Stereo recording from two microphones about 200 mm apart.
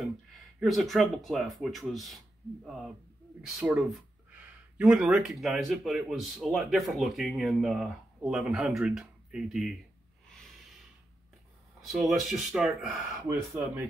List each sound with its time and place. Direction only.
0.6 s speech: centre (ahead or behind)
11.8 s speech: centre (ahead or behind)